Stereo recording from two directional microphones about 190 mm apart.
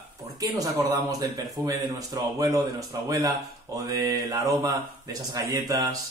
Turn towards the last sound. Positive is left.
turn(degrees=-20)  # may be behind; listen again after turning